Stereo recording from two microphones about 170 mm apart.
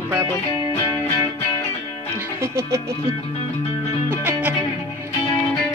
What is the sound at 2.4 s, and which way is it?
Speech, 15° right (ahead or behind).